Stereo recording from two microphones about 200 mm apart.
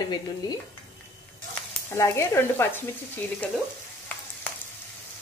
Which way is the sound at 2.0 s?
15° left (ahead or behind).